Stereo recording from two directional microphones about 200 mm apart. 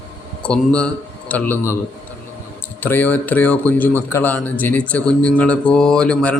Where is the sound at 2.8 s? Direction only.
10° left (ahead or behind).